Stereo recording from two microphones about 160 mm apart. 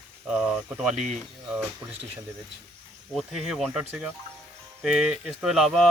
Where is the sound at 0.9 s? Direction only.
50° right (ahead or behind).